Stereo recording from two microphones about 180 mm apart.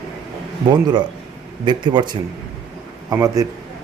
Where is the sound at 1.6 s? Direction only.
25° right (ahead or behind).